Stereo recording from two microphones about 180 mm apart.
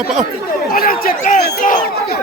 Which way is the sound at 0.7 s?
55° left (ahead or behind).